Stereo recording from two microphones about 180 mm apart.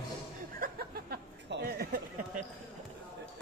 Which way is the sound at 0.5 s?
55° right (ahead or behind).